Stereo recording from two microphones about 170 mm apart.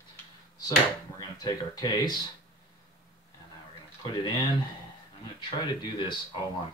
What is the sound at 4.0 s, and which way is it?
Speech, 25° left (ahead or behind).